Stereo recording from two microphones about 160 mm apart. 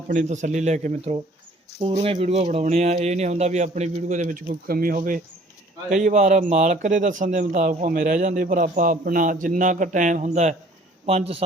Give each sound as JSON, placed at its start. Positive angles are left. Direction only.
{"t": 0.1, "sound": "a man's voice", "side_deg": -50}
{"t": 1.8, "sound": "a man's voice", "side_deg": -35}